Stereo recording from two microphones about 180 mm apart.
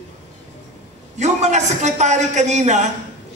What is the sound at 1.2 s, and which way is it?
A man's voice, 40° right (ahead or behind).